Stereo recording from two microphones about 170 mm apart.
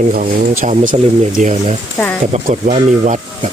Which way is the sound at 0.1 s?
50° right (ahead or behind).